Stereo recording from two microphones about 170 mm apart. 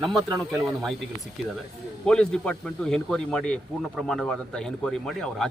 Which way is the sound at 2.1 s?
5° left (ahead or behind).